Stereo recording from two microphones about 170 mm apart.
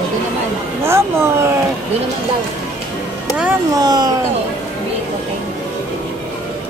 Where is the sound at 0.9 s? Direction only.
15° right (ahead or behind).